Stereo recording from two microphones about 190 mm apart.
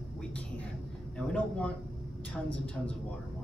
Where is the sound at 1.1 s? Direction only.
5° left (ahead or behind).